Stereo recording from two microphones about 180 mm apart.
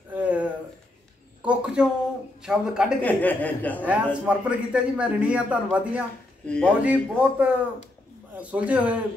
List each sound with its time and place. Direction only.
0.1 s a sound: 10° right (ahead or behind)
2.4 s a man's voice: 5° right (ahead or behind)
3.0 s speech: 10° left (ahead or behind)
3.8 s a man's voice: 5° right (ahead or behind)
6.4 s speech: 5° left (ahead or behind)
6.8 s a man's voice: 5° right (ahead or behind)